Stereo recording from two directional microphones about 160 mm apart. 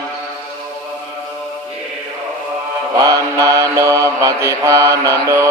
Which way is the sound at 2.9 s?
20° right (ahead or behind).